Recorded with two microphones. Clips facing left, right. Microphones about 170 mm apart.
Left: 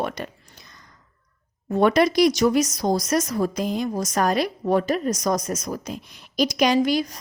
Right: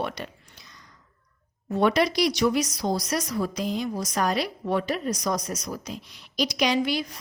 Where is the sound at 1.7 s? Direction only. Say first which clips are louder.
Left 4 dB; 50° left (ahead or behind).